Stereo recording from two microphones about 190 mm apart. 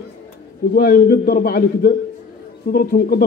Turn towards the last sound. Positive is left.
turn(degrees=55)  # may be behind; listen again after turning